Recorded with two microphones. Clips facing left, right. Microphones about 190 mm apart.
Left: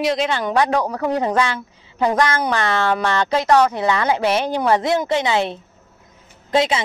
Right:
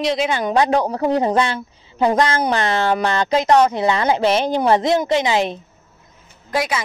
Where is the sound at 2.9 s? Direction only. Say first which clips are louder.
Right 1 dB; 35° right (ahead or behind).